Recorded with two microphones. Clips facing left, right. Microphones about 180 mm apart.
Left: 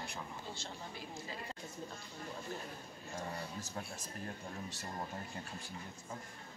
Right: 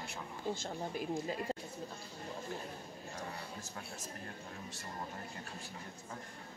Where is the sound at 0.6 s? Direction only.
50° right (ahead or behind).